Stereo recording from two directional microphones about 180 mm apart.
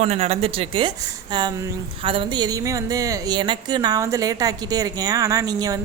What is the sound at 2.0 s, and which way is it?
Speech, 30° right (ahead or behind).